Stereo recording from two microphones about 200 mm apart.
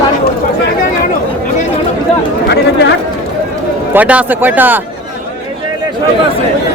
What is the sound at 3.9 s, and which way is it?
Speech, 10° right (ahead or behind).